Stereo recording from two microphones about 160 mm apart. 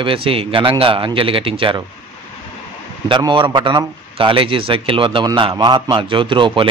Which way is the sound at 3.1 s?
30° right (ahead or behind).